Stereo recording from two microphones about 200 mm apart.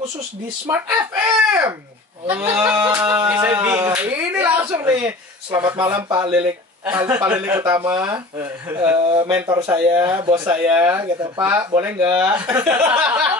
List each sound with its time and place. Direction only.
0.7 s speech: 10° right (ahead or behind)
6.3 s speech: 10° right (ahead or behind)
9.0 s speech: 25° right (ahead or behind)
10.5 s speech: 10° right (ahead or behind)